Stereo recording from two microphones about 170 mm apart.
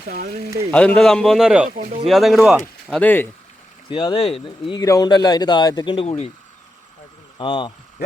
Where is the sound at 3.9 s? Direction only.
30° left (ahead or behind).